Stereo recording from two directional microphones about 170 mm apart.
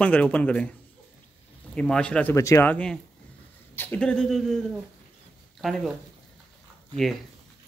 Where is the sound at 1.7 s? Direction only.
5° left (ahead or behind).